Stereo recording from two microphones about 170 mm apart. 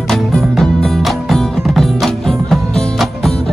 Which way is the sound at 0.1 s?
Centre (ahead or behind).